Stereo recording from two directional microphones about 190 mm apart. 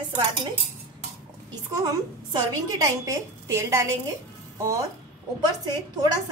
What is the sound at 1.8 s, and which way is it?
A woman's voice, 20° right (ahead or behind).